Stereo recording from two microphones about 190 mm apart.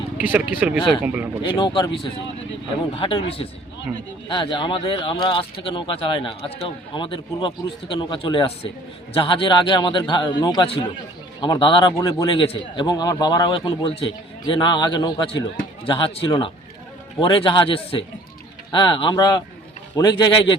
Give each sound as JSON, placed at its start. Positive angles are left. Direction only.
{"t": 0.2, "sound": "speech", "side_deg": -10}
{"t": 1.5, "sound": "a man's voice", "side_deg": 25}